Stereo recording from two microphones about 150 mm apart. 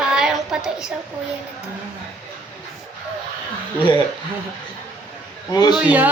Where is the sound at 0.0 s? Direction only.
5° right (ahead or behind).